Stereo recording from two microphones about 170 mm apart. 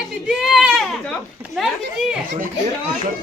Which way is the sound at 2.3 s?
50° right (ahead or behind).